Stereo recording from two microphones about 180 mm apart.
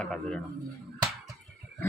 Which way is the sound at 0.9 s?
20° right (ahead or behind).